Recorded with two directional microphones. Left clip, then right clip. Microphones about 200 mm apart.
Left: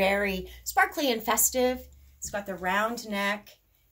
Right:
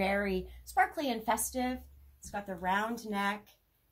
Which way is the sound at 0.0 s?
25° left (ahead or behind).